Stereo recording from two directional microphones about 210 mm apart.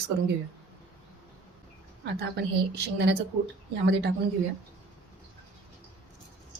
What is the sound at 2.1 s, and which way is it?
A woman's voice, 50° right (ahead or behind).